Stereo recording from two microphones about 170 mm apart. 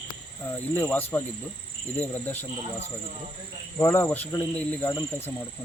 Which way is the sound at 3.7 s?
15° left (ahead or behind).